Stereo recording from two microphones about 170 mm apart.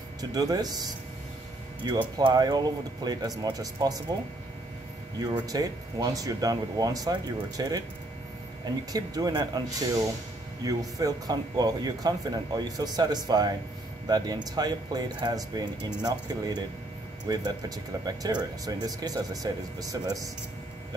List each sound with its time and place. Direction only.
0.2 s a man's voice: 20° right (ahead or behind)
5.2 s a man's voice: 20° right (ahead or behind)